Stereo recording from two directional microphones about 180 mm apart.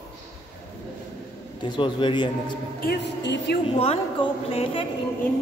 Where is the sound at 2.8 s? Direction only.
65° left (ahead or behind).